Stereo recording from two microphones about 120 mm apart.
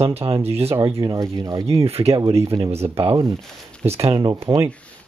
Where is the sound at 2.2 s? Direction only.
30° right (ahead or behind).